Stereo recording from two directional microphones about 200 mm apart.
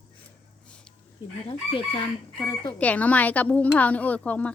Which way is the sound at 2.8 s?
5° left (ahead or behind).